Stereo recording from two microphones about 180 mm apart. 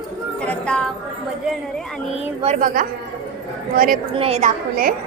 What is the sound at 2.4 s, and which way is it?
A woman's voice, 45° right (ahead or behind).